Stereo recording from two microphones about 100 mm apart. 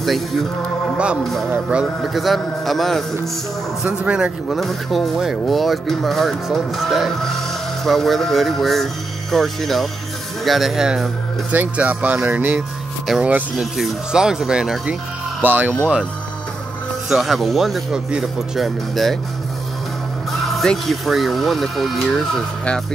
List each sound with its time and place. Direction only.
0.0 s speech: centre (ahead or behind)
0.9 s a man's voice: 10° right (ahead or behind)
2.1 s speech: centre (ahead or behind)
3.8 s speech: 10° right (ahead or behind)
4.5 s speech: centre (ahead or behind)
11.5 s speech: 15° right (ahead or behind)
13.0 s speech: 5° right (ahead or behind)
15.4 s speech: 20° right (ahead or behind)
17.1 s speech: centre (ahead or behind)
20.4 s speech: centre (ahead or behind)